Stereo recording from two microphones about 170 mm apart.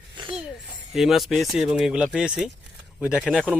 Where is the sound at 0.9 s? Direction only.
Centre (ahead or behind).